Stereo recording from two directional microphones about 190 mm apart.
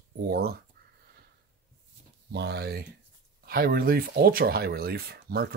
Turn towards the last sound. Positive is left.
turn(degrees=-55)  # may be behind; listen again after turning